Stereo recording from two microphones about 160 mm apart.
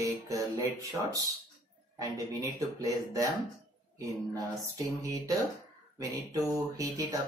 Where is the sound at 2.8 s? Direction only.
20° right (ahead or behind).